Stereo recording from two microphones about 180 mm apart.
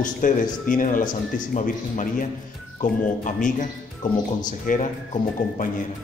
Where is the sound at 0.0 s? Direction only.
45° left (ahead or behind).